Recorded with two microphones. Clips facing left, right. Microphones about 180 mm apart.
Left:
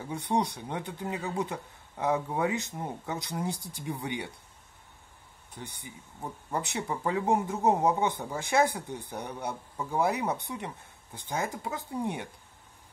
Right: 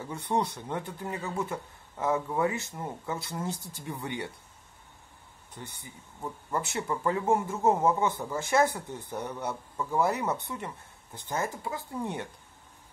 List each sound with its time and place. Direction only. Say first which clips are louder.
0.1 s speech: left 1 dB; 15° left (ahead or behind)
5.6 s speech: left 1 dB; 15° left (ahead or behind)